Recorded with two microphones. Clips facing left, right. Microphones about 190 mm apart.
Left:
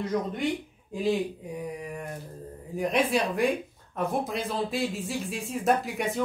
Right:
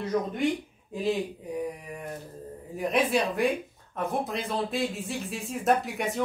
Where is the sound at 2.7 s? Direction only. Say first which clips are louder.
Even; centre (ahead or behind).